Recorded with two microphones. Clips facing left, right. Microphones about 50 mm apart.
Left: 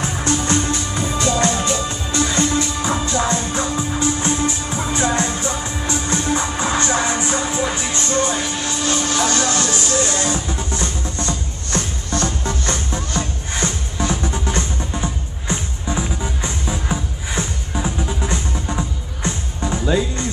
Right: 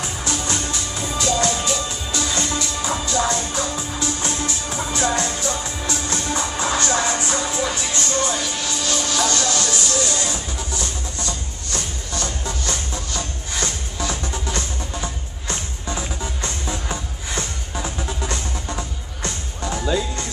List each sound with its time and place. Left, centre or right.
0.0 s music: left